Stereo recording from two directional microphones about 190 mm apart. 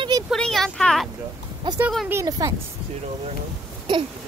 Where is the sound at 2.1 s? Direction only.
15° right (ahead or behind).